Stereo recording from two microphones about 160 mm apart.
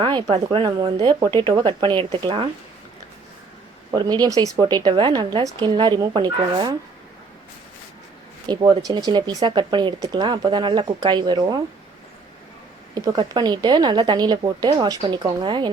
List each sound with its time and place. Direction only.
0.0 s speech: 30° right (ahead or behind)
3.9 s speech: 25° right (ahead or behind)
8.4 s speech: 25° right (ahead or behind)
12.9 s speech: 25° right (ahead or behind)